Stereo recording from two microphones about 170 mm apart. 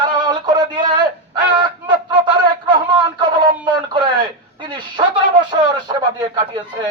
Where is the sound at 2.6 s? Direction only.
30° right (ahead or behind).